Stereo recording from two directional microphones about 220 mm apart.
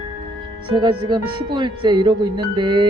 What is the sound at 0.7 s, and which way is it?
Speech, 20° right (ahead or behind).